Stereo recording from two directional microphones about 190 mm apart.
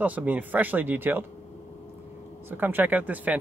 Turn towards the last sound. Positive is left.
turn(degrees=-10)  # may be behind; listen again after turning